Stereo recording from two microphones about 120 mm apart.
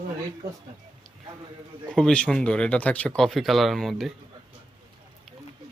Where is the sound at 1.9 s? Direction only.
5° left (ahead or behind).